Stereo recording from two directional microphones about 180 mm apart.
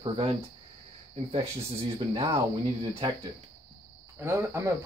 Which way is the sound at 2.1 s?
30° right (ahead or behind).